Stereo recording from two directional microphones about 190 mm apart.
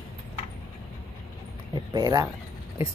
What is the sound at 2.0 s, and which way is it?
Speech, 20° right (ahead or behind).